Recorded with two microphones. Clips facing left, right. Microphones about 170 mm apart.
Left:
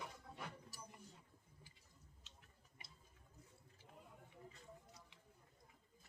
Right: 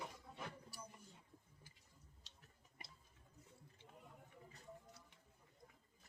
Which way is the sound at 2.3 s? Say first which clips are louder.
Left 2 dB; 35° right (ahead or behind).